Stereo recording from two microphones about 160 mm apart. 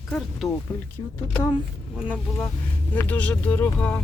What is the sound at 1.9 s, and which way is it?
Speech, 10° right (ahead or behind).